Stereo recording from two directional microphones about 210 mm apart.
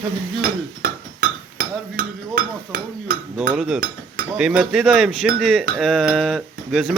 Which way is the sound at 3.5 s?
5° right (ahead or behind).